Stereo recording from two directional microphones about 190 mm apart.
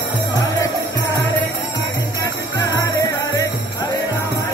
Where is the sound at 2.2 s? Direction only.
15° left (ahead or behind).